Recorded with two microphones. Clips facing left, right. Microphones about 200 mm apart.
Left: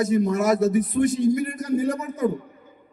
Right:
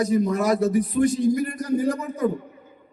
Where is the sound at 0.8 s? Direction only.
30° right (ahead or behind).